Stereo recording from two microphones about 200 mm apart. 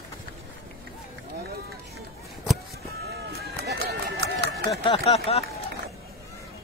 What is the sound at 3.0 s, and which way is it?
Run, 55° right (ahead or behind).